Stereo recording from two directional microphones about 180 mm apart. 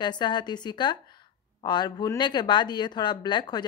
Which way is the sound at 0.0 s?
25° left (ahead or behind).